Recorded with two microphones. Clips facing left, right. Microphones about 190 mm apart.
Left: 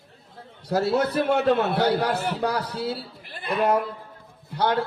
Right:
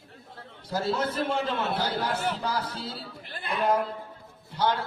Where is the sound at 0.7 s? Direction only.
70° left (ahead or behind).